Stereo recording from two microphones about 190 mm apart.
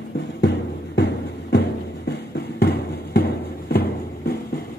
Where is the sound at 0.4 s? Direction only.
65° left (ahead or behind).